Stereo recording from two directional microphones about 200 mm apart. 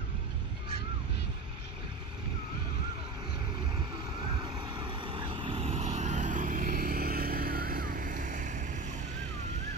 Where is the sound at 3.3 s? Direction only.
20° right (ahead or behind).